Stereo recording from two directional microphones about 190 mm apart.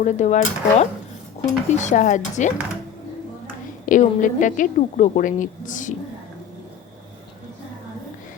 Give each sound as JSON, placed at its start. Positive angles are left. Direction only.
{"t": 0.0, "sound": "speech", "side_deg": 40}
{"t": 3.8, "sound": "a woman's voice", "side_deg": 45}